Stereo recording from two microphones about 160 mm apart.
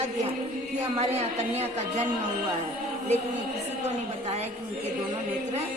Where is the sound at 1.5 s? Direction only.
45° right (ahead or behind).